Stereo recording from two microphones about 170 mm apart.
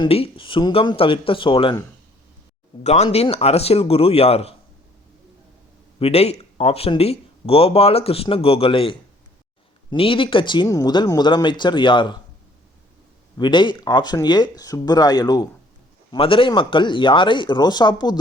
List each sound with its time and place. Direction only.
0.0 s speech: 35° left (ahead or behind)
2.8 s speech: 40° left (ahead or behind)
6.0 s speech: 35° left (ahead or behind)
13.3 s speech: 25° left (ahead or behind)